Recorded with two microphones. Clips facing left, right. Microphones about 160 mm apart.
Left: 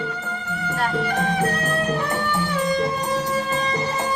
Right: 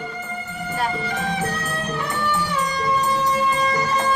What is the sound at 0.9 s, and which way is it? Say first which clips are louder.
Music: left 3 dB; 65° left (ahead or behind).